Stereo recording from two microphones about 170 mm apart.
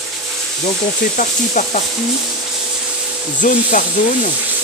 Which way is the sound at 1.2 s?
50° left (ahead or behind).